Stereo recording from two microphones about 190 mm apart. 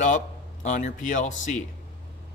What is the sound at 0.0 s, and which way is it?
Speech, 40° left (ahead or behind).